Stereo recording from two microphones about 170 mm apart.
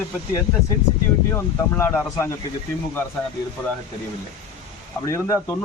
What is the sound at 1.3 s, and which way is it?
A man's voice, 15° left (ahead or behind).